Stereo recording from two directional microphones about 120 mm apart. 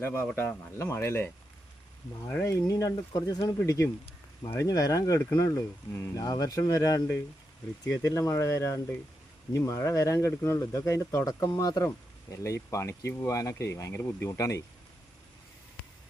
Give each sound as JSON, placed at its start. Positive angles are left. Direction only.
{"t": 0.0, "sound": "speech", "side_deg": 15}
{"t": 2.3, "sound": "speech", "side_deg": 25}